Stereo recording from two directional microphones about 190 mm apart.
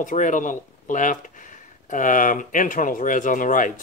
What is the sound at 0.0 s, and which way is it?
Speech, 45° left (ahead or behind).